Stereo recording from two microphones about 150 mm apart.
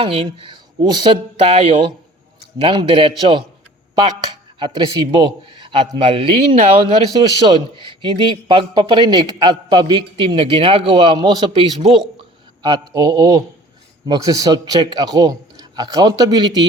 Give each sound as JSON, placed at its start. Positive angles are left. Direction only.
{"t": 0.0, "sound": "a man's voice", "side_deg": -40}
{"t": 2.6, "sound": "a man's voice", "side_deg": -35}
{"t": 4.6, "sound": "a man's voice", "side_deg": -30}